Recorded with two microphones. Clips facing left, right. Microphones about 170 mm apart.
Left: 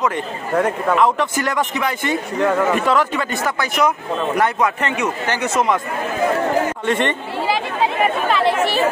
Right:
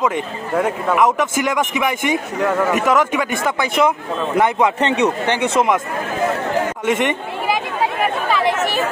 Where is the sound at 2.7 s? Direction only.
15° right (ahead or behind).